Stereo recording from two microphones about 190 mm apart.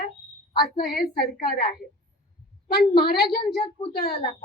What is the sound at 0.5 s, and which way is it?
Speech, 55° left (ahead or behind).